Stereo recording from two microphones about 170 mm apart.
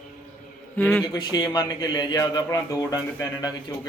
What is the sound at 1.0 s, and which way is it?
A man's voice, 25° left (ahead or behind).